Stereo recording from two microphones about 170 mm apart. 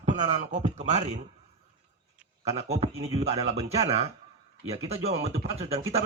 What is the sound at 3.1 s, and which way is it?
A man's voice, 40° right (ahead or behind).